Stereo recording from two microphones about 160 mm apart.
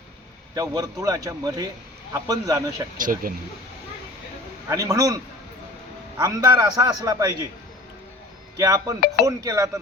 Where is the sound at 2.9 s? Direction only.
60° right (ahead or behind).